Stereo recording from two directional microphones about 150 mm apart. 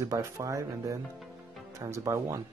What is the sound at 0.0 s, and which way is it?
Speech, 20° right (ahead or behind).